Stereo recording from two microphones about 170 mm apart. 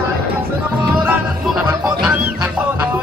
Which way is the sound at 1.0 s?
5° right (ahead or behind).